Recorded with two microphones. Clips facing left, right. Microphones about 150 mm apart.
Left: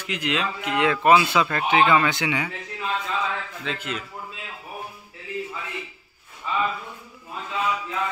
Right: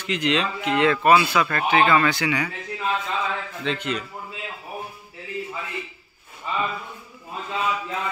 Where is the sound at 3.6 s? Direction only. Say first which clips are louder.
Right 4 dB; 5° left (ahead or behind).